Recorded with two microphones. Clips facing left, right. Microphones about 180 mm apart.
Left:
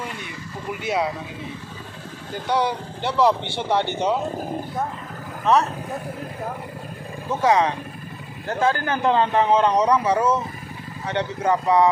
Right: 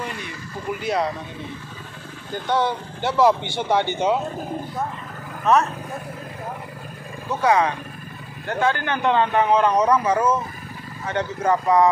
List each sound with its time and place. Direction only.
0.8 s speech: 5° left (ahead or behind)
2.3 s speech: 5° left (ahead or behind)
7.4 s speech: 20° left (ahead or behind)
8.5 s speech: 35° left (ahead or behind); by 11.9 s 15° left (ahead or behind)